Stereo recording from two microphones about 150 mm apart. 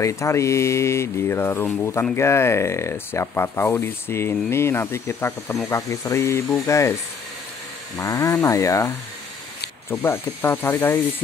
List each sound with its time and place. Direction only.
0.0 s speech: 20° left (ahead or behind)
8.0 s speech: 20° left (ahead or behind)